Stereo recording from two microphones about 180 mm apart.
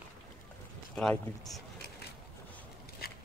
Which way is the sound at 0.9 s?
Centre (ahead or behind).